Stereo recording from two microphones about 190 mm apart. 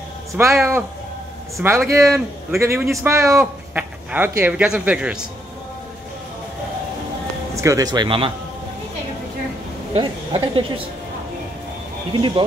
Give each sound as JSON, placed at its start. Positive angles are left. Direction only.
{"t": 0.4, "sound": "speech", "side_deg": -15}
{"t": 7.5, "sound": "speech", "side_deg": -15}
{"t": 9.9, "sound": "speech", "side_deg": -25}
{"t": 12.1, "sound": "speech", "side_deg": -25}